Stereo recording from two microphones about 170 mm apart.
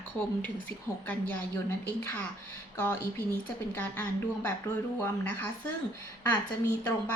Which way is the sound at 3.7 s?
10° left (ahead or behind).